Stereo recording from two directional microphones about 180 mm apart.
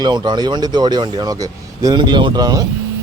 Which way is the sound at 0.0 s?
25° right (ahead or behind).